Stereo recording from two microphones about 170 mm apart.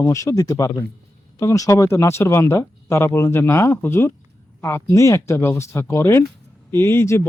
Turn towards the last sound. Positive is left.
turn(degrees=15)  # may be behind; listen again after turning